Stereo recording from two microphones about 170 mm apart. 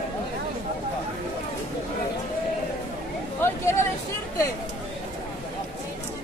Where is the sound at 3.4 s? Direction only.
15° left (ahead or behind).